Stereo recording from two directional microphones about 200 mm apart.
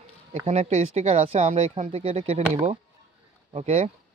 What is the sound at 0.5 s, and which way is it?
Speech, 35° right (ahead or behind).